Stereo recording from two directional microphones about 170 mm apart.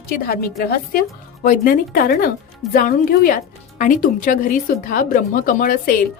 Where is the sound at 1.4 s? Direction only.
55° left (ahead or behind).